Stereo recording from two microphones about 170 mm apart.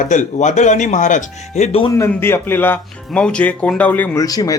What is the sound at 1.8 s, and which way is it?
Speech, 20° left (ahead or behind).